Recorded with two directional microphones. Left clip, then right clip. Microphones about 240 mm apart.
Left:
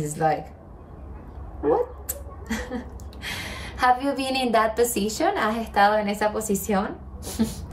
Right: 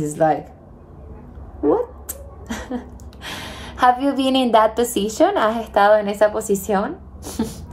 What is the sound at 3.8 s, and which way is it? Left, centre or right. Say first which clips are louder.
A woman's voice: right 5 dB; centre.